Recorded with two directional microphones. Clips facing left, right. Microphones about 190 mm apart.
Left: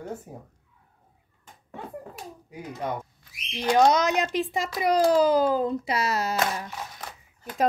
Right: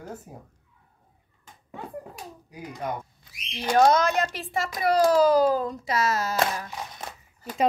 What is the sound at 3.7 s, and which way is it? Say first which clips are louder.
A child's voice: right 1 dB; 20° left (ahead or behind).